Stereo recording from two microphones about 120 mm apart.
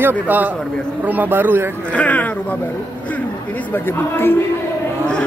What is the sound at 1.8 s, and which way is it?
Speech, 10° left (ahead or behind).